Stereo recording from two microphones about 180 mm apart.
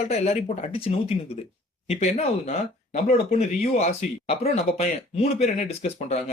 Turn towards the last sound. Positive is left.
turn(degrees=40)  # may be behind; listen again after turning